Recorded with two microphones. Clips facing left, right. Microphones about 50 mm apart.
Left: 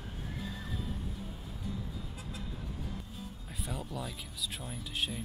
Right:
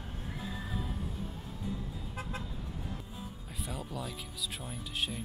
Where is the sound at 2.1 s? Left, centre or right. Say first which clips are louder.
Right 5 dB; right.